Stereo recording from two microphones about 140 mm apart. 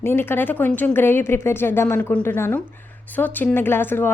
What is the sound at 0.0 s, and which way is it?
Speech, 15° left (ahead or behind).